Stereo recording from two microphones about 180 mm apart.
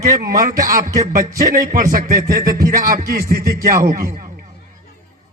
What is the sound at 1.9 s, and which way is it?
A man's voice, 50° right (ahead or behind).